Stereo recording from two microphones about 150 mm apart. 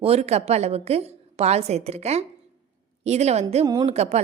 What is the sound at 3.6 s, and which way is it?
Speech, 30° right (ahead or behind).